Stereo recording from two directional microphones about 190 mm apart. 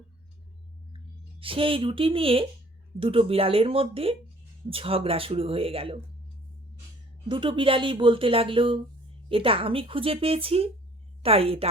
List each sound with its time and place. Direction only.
0.9 s speech: 30° right (ahead or behind)
7.3 s a woman's voice: 25° right (ahead or behind)